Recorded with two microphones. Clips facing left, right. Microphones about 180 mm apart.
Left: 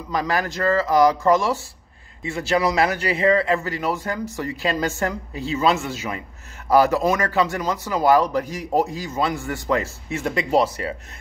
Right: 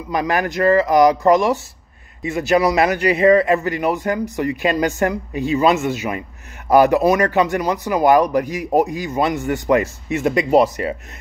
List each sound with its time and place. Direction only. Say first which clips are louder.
0.1 s speech: right 4 dB; 15° right (ahead or behind)